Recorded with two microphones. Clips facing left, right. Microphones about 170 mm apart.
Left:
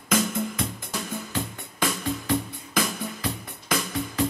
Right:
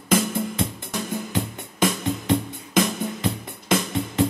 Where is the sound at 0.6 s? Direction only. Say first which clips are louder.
Right 4 dB; 30° right (ahead or behind).